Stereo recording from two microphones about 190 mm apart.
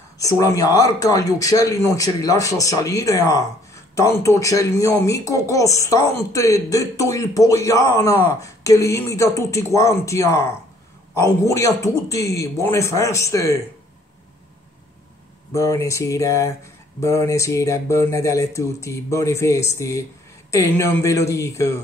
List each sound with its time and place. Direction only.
0.2 s speech: 15° left (ahead or behind)
15.5 s speech: 15° left (ahead or behind)